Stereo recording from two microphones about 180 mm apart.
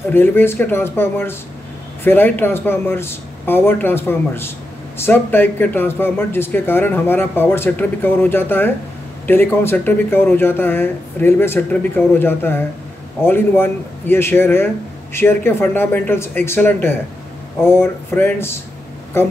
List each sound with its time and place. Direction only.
0.1 s speech: 10° left (ahead or behind)